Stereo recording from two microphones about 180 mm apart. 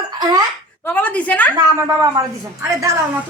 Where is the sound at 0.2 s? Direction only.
20° right (ahead or behind).